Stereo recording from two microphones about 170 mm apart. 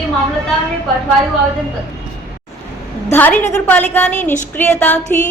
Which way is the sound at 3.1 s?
10° left (ahead or behind).